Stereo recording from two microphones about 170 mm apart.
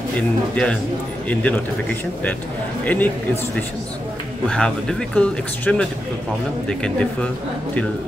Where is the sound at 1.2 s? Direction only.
10° left (ahead or behind).